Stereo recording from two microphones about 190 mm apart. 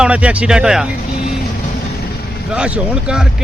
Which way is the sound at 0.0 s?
5° right (ahead or behind).